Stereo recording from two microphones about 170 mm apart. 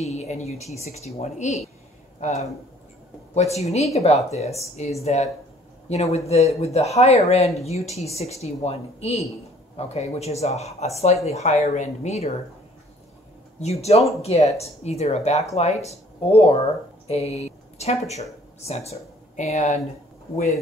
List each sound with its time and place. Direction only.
0.0 s a woman's voice: 40° left (ahead or behind)
13.6 s speech: 40° left (ahead or behind)